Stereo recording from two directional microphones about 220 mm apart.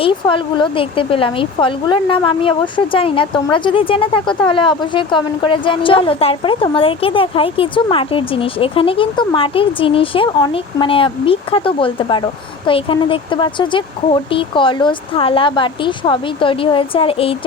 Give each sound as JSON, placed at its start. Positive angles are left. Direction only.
{"t": 0.0, "sound": "speech", "side_deg": 20}